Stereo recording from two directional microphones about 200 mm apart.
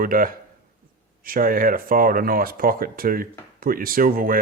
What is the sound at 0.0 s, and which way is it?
Speech, 45° right (ahead or behind).